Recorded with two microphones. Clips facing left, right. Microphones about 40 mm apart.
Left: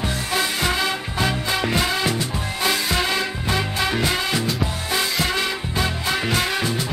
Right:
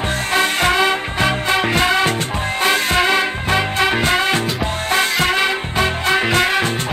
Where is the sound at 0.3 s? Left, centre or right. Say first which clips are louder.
Right 7 dB; right.